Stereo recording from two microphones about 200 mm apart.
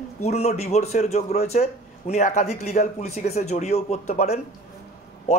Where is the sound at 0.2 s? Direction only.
35° left (ahead or behind).